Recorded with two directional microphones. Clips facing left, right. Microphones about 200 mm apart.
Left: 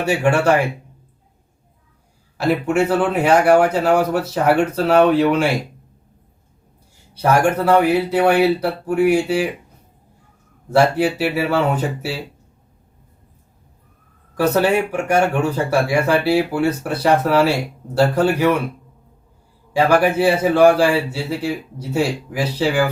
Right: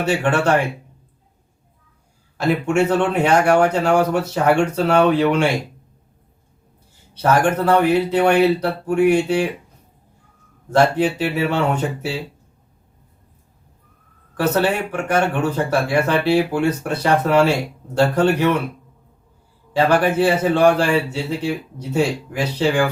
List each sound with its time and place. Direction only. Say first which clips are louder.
0.0 s speech: left 2 dB; 10° left (ahead or behind)
2.6 s speech: right 1 dB; 5° left (ahead or behind)
7.1 s speech: left 1 dB; 10° left (ahead or behind)
10.7 s speech: left 1 dB; 10° left (ahead or behind)
14.3 s speech: left 2 dB; 10° left (ahead or behind)
19.7 s speech: left 1 dB; 10° left (ahead or behind)